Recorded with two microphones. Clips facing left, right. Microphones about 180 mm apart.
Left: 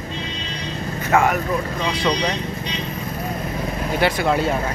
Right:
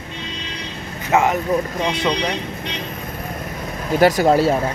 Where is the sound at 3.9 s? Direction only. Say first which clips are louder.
Right 6 dB; 40° right (ahead or behind).